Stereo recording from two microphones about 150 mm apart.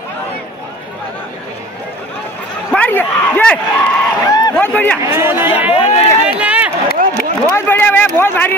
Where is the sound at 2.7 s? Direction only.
10° left (ahead or behind).